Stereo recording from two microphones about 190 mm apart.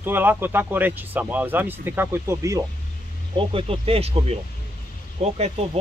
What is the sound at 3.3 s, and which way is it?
Speech, 25° right (ahead or behind).